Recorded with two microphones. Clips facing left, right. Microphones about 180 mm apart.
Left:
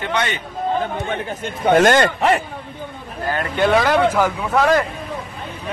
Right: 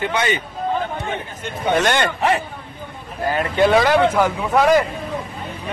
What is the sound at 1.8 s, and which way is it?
Speech, 45° left (ahead or behind).